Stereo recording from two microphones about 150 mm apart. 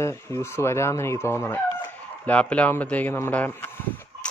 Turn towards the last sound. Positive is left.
turn(degrees=15)  # may be behind; listen again after turning